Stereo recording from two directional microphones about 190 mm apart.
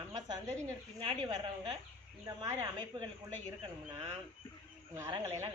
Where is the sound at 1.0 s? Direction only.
25° right (ahead or behind).